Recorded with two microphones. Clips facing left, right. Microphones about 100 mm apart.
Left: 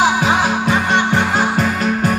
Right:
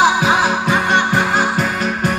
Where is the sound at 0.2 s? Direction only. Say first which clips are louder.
Even; 15° right (ahead or behind).